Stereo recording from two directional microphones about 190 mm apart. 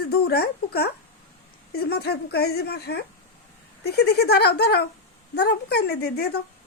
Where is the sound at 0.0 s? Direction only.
55° left (ahead or behind).